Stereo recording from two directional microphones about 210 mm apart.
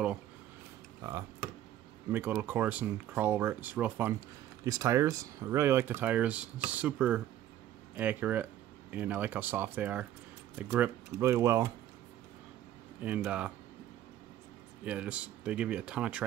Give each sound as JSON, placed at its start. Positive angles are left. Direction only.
{"t": 1.0, "sound": "a sound", "side_deg": -15}
{"t": 2.1, "sound": "speech", "side_deg": -10}
{"t": 13.0, "sound": "speech", "side_deg": -5}
{"t": 14.9, "sound": "speech", "side_deg": -5}